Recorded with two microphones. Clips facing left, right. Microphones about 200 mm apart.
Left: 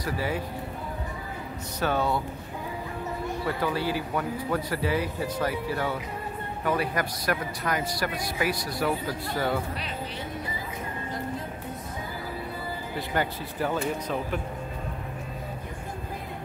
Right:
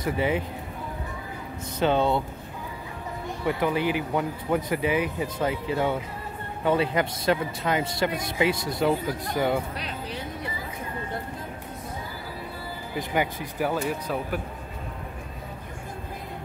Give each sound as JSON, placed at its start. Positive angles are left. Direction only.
{"t": 0.0, "sound": "speech", "side_deg": -20}
{"t": 1.8, "sound": "speech", "side_deg": -25}
{"t": 3.4, "sound": "speech", "side_deg": -20}
{"t": 13.1, "sound": "speech", "side_deg": -15}